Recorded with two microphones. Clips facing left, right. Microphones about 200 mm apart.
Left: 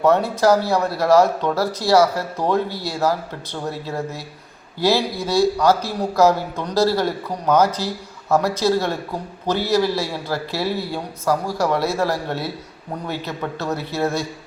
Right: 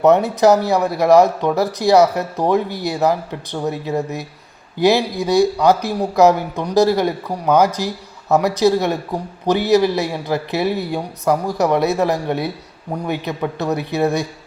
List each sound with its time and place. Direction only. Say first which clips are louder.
0.0 s speech: right 4 dB; 20° right (ahead or behind)